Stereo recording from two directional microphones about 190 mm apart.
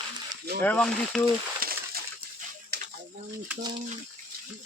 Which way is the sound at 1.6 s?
50° right (ahead or behind).